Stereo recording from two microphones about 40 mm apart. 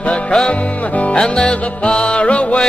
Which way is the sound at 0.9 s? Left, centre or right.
Left.